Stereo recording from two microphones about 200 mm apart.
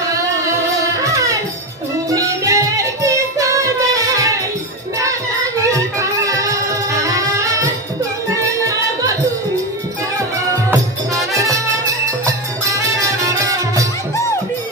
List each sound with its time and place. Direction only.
1.0 s music: 15° right (ahead or behind)
11.3 s music: 15° right (ahead or behind)